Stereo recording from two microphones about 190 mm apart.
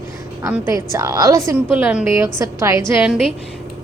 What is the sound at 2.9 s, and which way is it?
Speech, 5° right (ahead or behind).